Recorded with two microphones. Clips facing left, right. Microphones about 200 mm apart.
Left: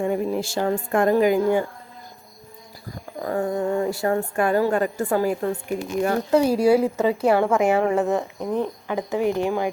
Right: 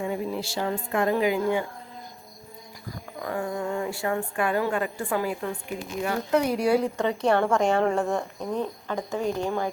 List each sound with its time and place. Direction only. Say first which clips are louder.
0.0 s speech: left 6 dB; 50° left (ahead or behind)
3.2 s a woman's voice: left 6 dB; 40° left (ahead or behind)
6.3 s a woman's voice: left 5 dB; 30° left (ahead or behind)
6.9 s a woman's voice: left 4 dB; 5° left (ahead or behind)
8.4 s speech: left 4 dB; 15° left (ahead or behind)